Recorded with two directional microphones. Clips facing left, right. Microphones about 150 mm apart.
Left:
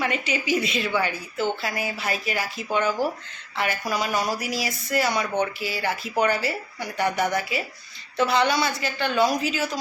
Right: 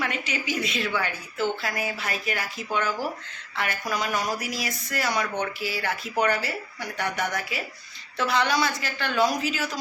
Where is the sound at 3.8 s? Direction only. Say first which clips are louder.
Even; 5° left (ahead or behind).